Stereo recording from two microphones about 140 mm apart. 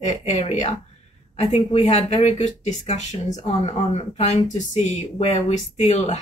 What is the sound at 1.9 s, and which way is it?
Speech, 50° left (ahead or behind).